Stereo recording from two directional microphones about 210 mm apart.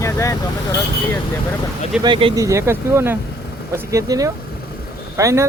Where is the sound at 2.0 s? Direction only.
20° right (ahead or behind).